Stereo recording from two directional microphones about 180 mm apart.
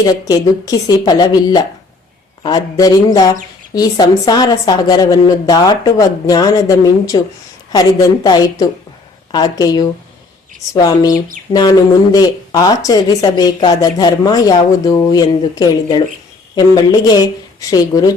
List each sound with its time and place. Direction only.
0.1 s speech: 20° left (ahead or behind)